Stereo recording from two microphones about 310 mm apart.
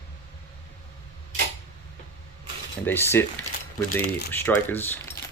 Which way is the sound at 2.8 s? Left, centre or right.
Centre.